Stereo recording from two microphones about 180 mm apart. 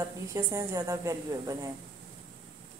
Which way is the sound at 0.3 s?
20° right (ahead or behind).